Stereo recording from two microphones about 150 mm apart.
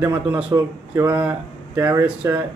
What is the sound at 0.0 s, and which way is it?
A man's voice, 15° right (ahead or behind).